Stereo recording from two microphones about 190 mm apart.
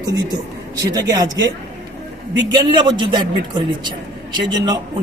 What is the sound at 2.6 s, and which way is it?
A man's voice, 25° right (ahead or behind).